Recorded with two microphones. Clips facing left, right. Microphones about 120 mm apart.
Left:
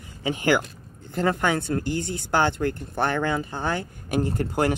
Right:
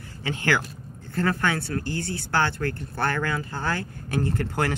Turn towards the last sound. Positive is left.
turn(degrees=15)  # may be behind; listen again after turning